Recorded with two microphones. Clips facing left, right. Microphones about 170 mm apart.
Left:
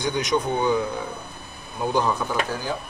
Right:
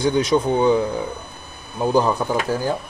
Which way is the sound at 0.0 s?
30° right (ahead or behind).